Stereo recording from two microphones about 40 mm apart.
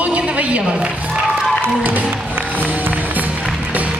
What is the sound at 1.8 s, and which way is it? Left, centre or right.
Music, right.